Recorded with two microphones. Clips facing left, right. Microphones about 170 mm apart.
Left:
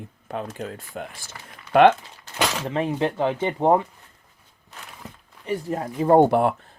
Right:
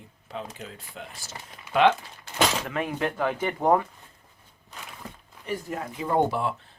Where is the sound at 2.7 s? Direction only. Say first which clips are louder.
Left 5 dB; 30° left (ahead or behind).